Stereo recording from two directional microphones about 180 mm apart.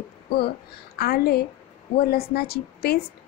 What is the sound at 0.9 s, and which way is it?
A woman's voice, 60° left (ahead or behind).